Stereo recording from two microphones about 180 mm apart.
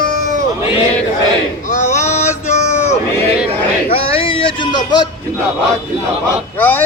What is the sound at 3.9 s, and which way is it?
Speech, 30° left (ahead or behind).